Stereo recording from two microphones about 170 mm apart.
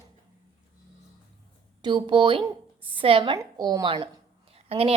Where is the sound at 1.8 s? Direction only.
25° right (ahead or behind).